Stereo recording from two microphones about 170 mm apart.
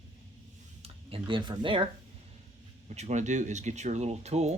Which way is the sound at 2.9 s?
40° right (ahead or behind).